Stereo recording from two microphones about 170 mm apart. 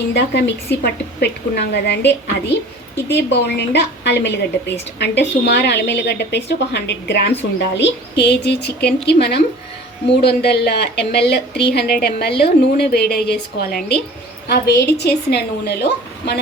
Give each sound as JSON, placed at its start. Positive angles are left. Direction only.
{"t": 0.1, "sound": "a woman's voice", "side_deg": 75}